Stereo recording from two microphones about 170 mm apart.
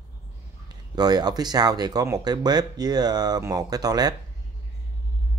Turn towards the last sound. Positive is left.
turn(degrees=-20)  # may be behind; listen again after turning